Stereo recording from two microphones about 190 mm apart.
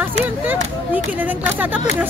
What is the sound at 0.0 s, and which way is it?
Speech, 10° right (ahead or behind).